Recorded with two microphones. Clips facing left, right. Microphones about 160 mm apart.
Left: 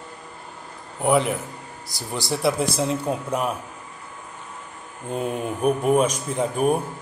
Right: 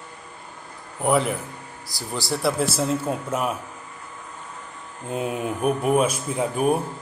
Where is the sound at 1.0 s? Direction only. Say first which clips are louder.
Left 1 dB; centre (ahead or behind).